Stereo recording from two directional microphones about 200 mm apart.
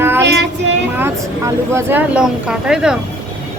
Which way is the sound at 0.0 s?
10° right (ahead or behind).